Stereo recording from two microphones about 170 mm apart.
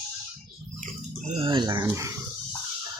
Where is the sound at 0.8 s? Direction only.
40° right (ahead or behind); by 2.1 s 25° right (ahead or behind).